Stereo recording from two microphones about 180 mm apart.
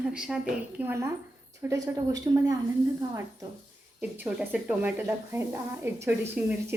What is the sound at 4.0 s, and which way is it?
A woman's voice, 10° right (ahead or behind).